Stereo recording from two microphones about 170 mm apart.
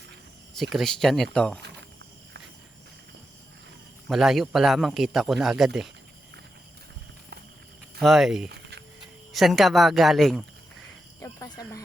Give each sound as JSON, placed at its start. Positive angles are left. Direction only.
{"t": 0.5, "sound": "a man's voice", "side_deg": 0}
{"t": 4.1, "sound": "a man's voice", "side_deg": 0}
{"t": 7.9, "sound": "a man's voice", "side_deg": 0}
{"t": 11.2, "sound": "cricket", "side_deg": 20}